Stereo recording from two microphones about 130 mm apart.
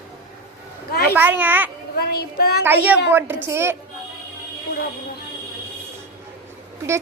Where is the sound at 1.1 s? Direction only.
15° right (ahead or behind).